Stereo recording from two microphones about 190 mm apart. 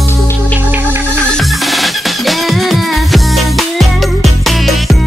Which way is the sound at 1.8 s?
Centre (ahead or behind).